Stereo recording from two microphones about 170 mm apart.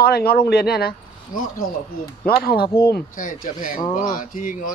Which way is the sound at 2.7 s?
15° left (ahead or behind).